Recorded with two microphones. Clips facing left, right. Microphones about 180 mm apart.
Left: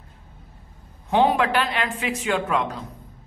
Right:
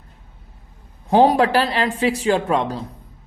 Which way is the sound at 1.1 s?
35° right (ahead or behind).